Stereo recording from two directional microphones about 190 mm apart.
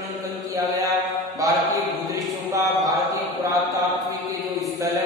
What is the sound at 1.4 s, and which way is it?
Mantra, 15° right (ahead or behind).